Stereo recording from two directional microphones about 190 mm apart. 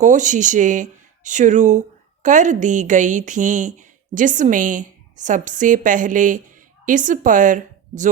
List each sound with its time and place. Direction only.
0.0 s speech: 40° right (ahead or behind)